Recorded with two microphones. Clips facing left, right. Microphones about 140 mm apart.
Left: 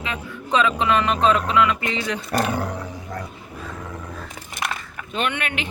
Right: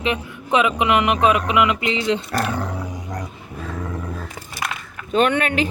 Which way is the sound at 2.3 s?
25° left (ahead or behind).